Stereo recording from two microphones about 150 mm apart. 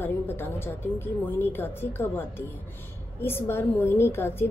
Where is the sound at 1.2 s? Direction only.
15° left (ahead or behind).